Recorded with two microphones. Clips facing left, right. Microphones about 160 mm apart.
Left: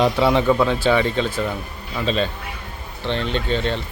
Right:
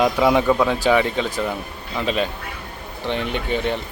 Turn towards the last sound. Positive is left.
turn(degrees=-15)  # may be behind; listen again after turning